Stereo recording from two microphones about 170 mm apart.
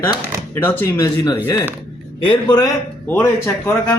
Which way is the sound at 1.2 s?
25° left (ahead or behind).